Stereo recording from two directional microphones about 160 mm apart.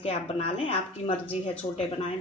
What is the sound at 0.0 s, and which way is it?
A woman's voice, 35° left (ahead or behind).